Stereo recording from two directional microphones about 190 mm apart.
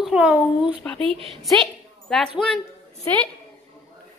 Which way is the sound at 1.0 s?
30° right (ahead or behind).